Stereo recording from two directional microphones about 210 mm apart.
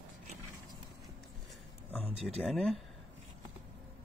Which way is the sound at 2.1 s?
30° right (ahead or behind).